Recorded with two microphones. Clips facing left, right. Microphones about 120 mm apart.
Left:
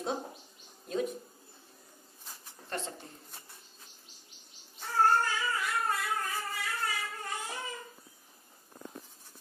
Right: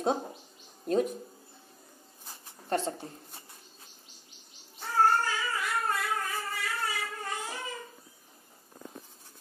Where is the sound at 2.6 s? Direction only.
35° right (ahead or behind).